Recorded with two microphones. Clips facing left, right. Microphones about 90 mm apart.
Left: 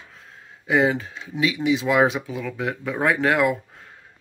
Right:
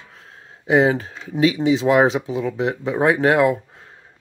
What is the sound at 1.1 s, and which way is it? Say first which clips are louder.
Speech: right 6 dB; 40° right (ahead or behind).